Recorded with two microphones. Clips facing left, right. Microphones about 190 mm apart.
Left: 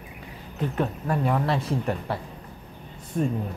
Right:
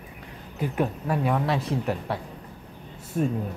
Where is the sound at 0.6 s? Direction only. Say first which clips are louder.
Right 1 dB; 5° right (ahead or behind).